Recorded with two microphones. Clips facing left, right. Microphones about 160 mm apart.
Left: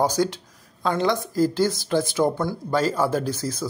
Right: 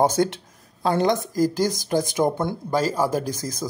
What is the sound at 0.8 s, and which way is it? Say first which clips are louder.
Speech: right 2 dB; 45° right (ahead or behind).